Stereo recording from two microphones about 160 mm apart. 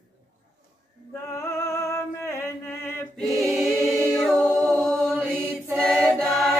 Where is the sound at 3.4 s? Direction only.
Centre (ahead or behind).